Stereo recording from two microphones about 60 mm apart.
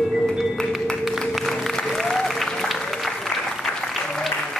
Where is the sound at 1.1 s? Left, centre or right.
Centre.